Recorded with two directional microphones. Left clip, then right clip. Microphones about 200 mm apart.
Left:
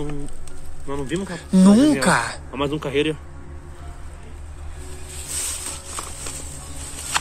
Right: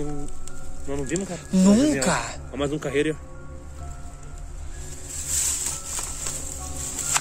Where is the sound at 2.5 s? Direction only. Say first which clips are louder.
Left 2 dB; 50° right (ahead or behind).